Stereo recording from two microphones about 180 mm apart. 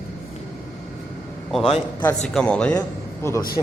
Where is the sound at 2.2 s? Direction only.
5° left (ahead or behind).